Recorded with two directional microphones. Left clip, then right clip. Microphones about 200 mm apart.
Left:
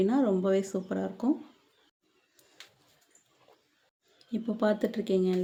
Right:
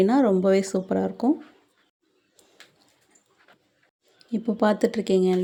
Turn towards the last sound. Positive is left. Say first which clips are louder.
# right 7 dB
turn(degrees=-30)  # may be behind; listen again after turning